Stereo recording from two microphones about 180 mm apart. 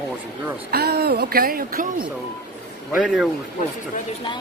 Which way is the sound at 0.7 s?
65° right (ahead or behind).